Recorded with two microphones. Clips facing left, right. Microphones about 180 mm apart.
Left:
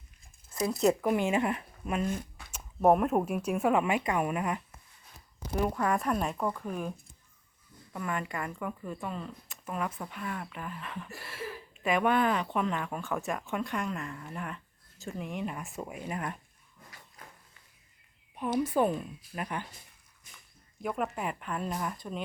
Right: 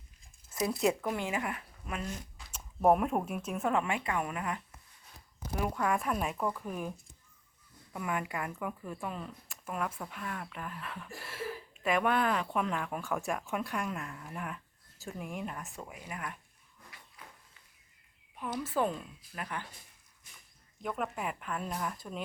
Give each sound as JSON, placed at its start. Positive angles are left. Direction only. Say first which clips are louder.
{"t": 1.0, "sound": "speech", "louder": "left 7 dB", "side_deg": 20}
{"t": 2.0, "sound": "squish", "louder": "left 7 dB", "side_deg": 55}
{"t": 2.8, "sound": "speech", "louder": "left 3 dB", "side_deg": 0}
{"t": 5.5, "sound": "speech", "louder": "left 3 dB", "side_deg": 0}
{"t": 7.9, "sound": "speech", "louder": "left 1 dB", "side_deg": -10}
{"t": 15.7, "sound": "speech", "louder": "left 7 dB", "side_deg": 20}
{"t": 17.2, "sound": "a sound", "louder": "left 1 dB", "side_deg": 40}
{"t": 18.3, "sound": "speech", "louder": "left 5 dB", "side_deg": 20}
{"t": 20.8, "sound": "speech", "louder": "left 3 dB", "side_deg": 0}